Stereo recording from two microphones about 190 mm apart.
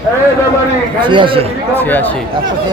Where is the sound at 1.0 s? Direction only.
25° right (ahead or behind).